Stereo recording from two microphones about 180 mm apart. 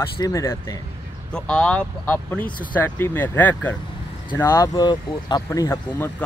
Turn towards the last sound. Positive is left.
turn(degrees=15)  # may be behind; listen again after turning